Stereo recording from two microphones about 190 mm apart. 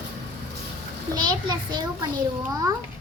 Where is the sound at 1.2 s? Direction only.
25° right (ahead or behind).